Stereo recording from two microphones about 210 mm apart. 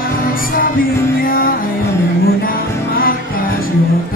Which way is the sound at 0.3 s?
45° left (ahead or behind).